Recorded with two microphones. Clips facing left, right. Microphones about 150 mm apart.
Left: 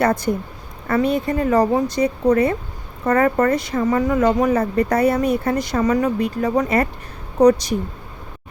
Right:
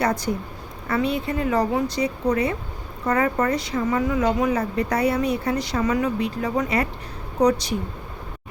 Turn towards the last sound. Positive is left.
turn(degrees=45)  # may be behind; listen again after turning